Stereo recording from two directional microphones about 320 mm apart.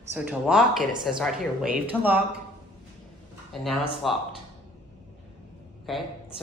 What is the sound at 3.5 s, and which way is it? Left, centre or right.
Speech, centre.